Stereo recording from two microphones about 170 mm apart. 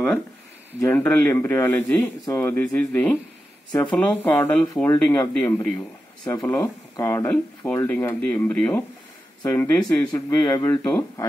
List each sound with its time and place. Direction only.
0.7 s speech: 15° left (ahead or behind)